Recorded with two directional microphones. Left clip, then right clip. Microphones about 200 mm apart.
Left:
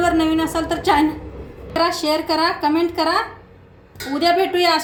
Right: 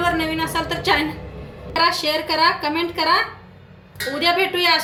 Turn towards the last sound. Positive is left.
turn(degrees=45)  # may be behind; listen again after turning